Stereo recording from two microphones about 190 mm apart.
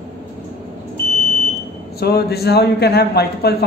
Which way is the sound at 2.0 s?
55° left (ahead or behind).